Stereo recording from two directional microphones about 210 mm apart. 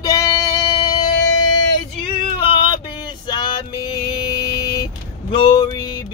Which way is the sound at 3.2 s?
20° left (ahead or behind).